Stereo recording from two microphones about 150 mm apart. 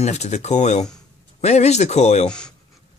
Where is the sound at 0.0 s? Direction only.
45° left (ahead or behind).